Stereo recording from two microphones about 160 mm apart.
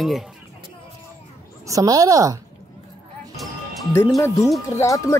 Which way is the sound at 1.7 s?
20° right (ahead or behind).